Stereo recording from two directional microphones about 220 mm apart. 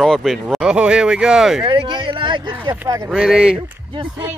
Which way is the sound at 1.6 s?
20° right (ahead or behind).